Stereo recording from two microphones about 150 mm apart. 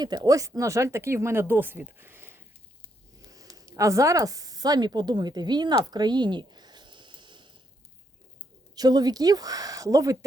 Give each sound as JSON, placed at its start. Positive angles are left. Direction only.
{"t": 0.0, "sound": "speech", "side_deg": -25}
{"t": 8.7, "sound": "speech", "side_deg": -25}